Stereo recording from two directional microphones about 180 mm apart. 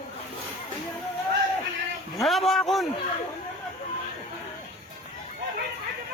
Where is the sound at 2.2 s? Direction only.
Centre (ahead or behind).